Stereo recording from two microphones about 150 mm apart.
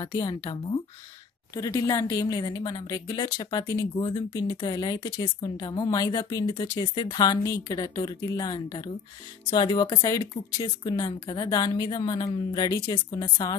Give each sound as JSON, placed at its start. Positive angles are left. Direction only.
{"t": 0.0, "sound": "a woman's voice", "side_deg": 30}